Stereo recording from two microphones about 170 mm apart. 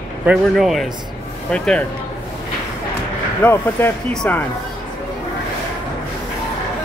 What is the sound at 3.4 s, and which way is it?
Speech, 10° left (ahead or behind).